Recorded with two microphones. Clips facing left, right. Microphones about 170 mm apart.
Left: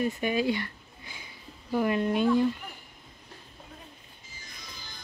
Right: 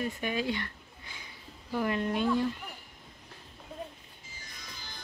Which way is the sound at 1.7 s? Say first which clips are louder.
Left 4 dB; 15° left (ahead or behind).